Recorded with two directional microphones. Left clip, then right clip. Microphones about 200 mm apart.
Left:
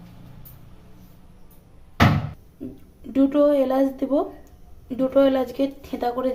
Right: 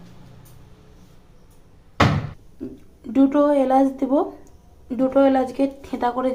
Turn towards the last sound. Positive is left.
turn(degrees=-5)  # may be behind; listen again after turning